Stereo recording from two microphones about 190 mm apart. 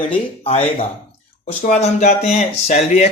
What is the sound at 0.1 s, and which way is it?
Speech, 30° left (ahead or behind).